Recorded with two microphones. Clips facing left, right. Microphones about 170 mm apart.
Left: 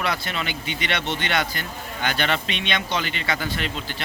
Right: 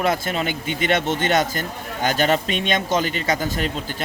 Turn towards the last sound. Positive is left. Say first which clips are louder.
# right 4 dB
turn(degrees=-45)  # may be behind; listen again after turning